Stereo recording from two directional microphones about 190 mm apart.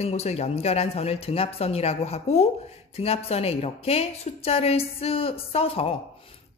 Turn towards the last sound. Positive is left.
turn(degrees=30)  # may be behind; listen again after turning